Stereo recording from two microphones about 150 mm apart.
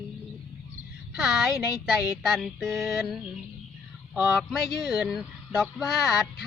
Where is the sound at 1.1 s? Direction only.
5° right (ahead or behind).